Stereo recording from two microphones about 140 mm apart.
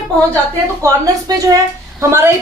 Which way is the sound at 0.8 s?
25° right (ahead or behind).